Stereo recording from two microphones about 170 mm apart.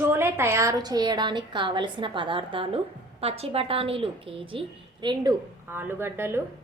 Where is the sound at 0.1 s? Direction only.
15° right (ahead or behind).